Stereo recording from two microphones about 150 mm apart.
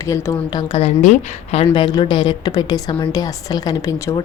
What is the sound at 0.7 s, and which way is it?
Speech, 50° left (ahead or behind).